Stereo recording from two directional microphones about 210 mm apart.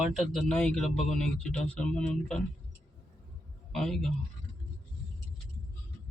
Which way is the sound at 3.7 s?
Centre (ahead or behind).